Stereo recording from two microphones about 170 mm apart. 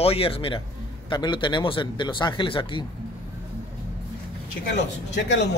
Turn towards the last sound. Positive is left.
turn(degrees=90)